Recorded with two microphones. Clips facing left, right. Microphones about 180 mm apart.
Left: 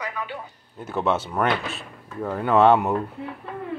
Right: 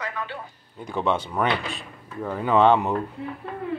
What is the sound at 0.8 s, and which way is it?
Speech, 5° left (ahead or behind).